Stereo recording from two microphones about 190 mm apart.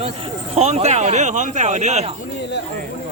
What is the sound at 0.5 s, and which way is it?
Speech, 35° right (ahead or behind).